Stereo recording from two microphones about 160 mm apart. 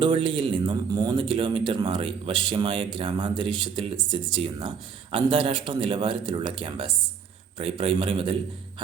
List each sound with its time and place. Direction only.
0.0 s speech: 30° right (ahead or behind)